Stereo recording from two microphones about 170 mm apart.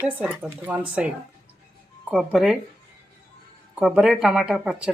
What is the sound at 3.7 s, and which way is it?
Speech, 5° right (ahead or behind).